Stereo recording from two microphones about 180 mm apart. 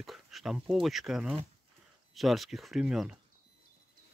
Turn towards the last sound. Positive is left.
turn(degrees=-5)  # may be behind; listen again after turning